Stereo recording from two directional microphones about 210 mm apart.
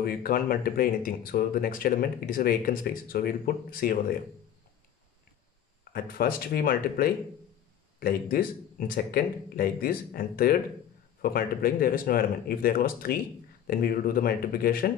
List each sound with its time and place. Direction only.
0.0 s speech: 45° left (ahead or behind)
5.9 s speech: 45° left (ahead or behind)